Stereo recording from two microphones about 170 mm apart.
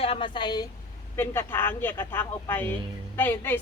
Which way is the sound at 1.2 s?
15° left (ahead or behind).